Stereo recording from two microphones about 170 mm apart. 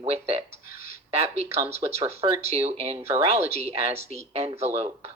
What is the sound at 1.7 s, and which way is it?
Speech, 35° right (ahead or behind).